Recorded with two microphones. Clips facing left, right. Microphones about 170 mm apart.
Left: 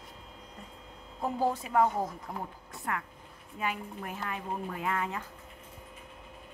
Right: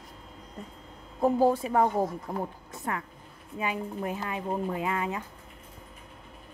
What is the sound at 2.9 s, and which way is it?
Speech, 25° right (ahead or behind).